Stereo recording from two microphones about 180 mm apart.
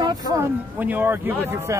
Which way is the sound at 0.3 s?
10° right (ahead or behind).